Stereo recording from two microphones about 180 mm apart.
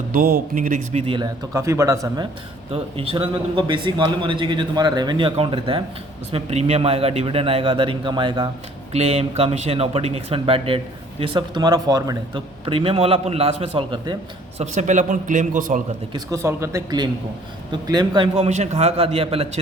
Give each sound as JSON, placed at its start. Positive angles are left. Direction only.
{"t": 0.1, "sound": "a man's voice", "side_deg": -55}
{"t": 1.0, "sound": "a man's voice", "side_deg": -25}
{"t": 1.5, "sound": "speech", "side_deg": -15}
{"t": 2.7, "sound": "a man's voice", "side_deg": -30}
{"t": 14.6, "sound": "a man's voice", "side_deg": -40}
{"t": 16.1, "sound": "a man's voice", "side_deg": -15}
{"t": 18.4, "sound": "a man's voice", "side_deg": -40}